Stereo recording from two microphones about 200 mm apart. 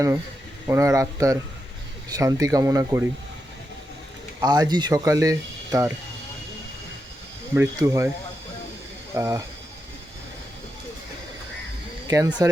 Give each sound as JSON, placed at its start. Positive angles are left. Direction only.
{"t": 0.7, "sound": "speech", "side_deg": -15}
{"t": 4.4, "sound": "speech", "side_deg": -20}
{"t": 7.5, "sound": "speech", "side_deg": -15}
{"t": 9.1, "sound": "speech", "side_deg": -15}
{"t": 12.0, "sound": "speech", "side_deg": -15}